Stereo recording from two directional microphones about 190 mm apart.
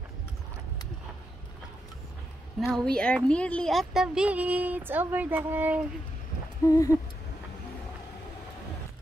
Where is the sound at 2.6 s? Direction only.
Centre (ahead or behind).